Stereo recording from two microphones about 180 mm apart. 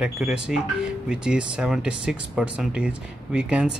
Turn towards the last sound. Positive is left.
turn(degrees=-5)  # may be behind; listen again after turning